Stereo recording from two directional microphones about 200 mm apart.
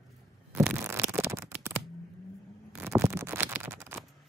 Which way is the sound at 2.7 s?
15° right (ahead or behind).